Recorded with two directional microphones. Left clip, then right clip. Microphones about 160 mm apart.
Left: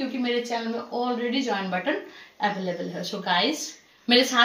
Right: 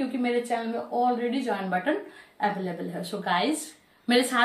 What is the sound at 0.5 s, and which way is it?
A woman's voice, 5° right (ahead or behind).